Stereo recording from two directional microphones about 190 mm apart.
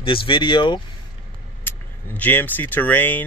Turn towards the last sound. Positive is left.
turn(degrees=10)  # may be behind; listen again after turning